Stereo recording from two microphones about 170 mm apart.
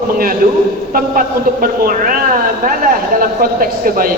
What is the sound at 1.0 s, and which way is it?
A man's voice, 55° right (ahead or behind).